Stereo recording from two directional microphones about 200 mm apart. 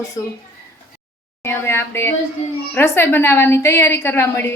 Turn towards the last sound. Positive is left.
turn(degrees=10)  # may be behind; listen again after turning